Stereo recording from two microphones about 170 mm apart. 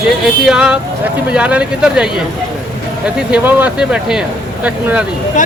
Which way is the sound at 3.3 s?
5° right (ahead or behind).